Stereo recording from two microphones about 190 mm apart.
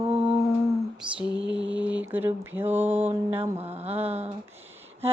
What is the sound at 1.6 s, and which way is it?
Speech, 5° right (ahead or behind).